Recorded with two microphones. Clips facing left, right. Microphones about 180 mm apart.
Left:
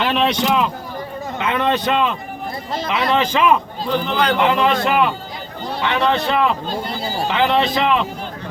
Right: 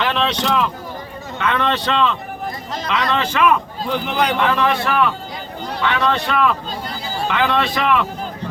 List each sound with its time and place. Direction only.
0.0 s speech: 15° left (ahead or behind)
2.7 s speech: 25° left (ahead or behind)
3.8 s a man's voice: 10° right (ahead or behind)
4.4 s speech: 20° left (ahead or behind)